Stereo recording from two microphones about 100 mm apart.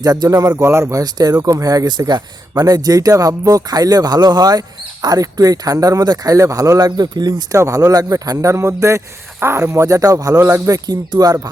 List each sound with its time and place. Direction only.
0.0 s speech: 40° right (ahead or behind)
0.5 s speech: 25° right (ahead or behind); by 7.4 s 45° right (ahead or behind)
7.5 s speech: 30° right (ahead or behind)
10.8 s speech: 40° right (ahead or behind)